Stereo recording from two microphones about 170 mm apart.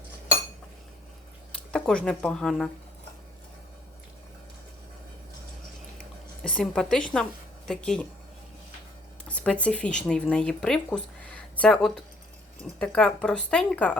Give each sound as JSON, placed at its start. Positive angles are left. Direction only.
{"t": 1.5, "sound": "speech", "side_deg": 5}
{"t": 6.4, "sound": "speech", "side_deg": 5}
{"t": 9.2, "sound": "speech", "side_deg": 5}